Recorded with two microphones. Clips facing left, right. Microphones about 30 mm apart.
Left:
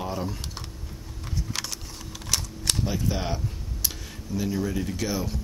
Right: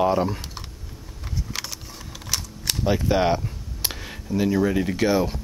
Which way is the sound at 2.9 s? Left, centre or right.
Right.